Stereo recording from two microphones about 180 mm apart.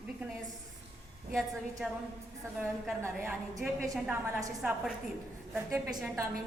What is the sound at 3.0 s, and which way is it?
A woman's voice, 15° right (ahead or behind).